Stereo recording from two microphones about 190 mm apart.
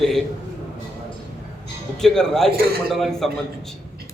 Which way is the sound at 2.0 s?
Centre (ahead or behind).